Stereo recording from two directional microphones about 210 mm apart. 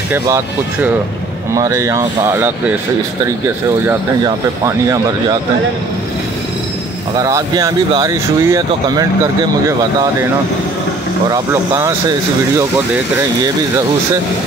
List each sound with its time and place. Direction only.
1.5 s speech: 15° right (ahead or behind)
4.6 s speech: 15° right (ahead or behind)
7.2 s speech: 15° right (ahead or behind)
11.2 s speech: 15° right (ahead or behind)